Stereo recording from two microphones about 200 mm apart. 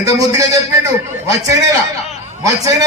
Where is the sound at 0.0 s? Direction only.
15° right (ahead or behind).